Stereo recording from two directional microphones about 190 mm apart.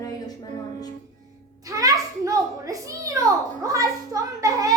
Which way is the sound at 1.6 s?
20° right (ahead or behind).